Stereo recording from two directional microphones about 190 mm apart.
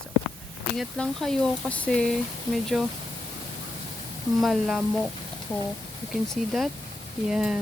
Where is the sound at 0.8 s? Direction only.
Centre (ahead or behind).